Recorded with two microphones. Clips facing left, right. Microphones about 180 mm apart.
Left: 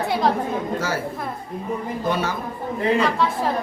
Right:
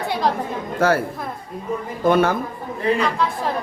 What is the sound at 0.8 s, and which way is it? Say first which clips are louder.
Speech: right 8 dB; 60° right (ahead or behind).